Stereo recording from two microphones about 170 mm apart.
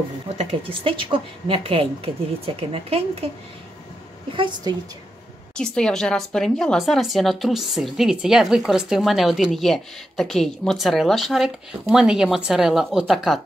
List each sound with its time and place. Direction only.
0.8 s a woman's voice: 30° right (ahead or behind)
4.3 s a woman's voice: 30° right (ahead or behind)
5.6 s speech: 5° left (ahead or behind)